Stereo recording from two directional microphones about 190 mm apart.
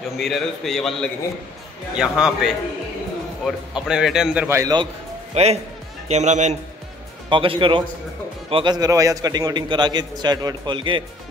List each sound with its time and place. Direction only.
0.2 s speech: centre (ahead or behind); by 4.8 s 15° right (ahead or behind)
5.3 s a man's voice: 35° right (ahead or behind)
7.2 s a man's voice: 25° right (ahead or behind)